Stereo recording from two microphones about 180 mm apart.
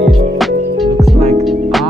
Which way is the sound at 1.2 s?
35° right (ahead or behind).